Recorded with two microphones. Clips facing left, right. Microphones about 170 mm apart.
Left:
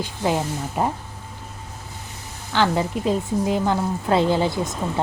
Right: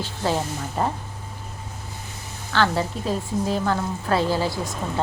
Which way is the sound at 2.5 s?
15° left (ahead or behind).